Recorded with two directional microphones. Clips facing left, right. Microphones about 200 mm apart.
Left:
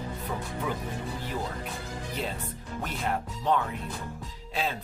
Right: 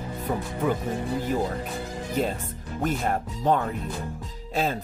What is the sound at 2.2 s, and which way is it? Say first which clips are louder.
Speech: right 9 dB; 45° right (ahead or behind).